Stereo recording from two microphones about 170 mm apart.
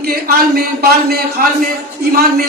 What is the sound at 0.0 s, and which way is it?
A man's voice, 60° right (ahead or behind).